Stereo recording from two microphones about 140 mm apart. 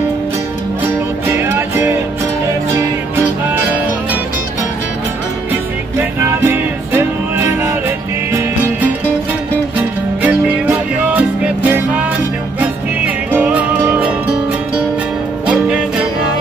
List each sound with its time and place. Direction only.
0.8 s music: 15° right (ahead or behind)
3.5 s music: 10° right (ahead or behind)
5.9 s music: 15° right (ahead or behind)
15.4 s music: 10° right (ahead or behind)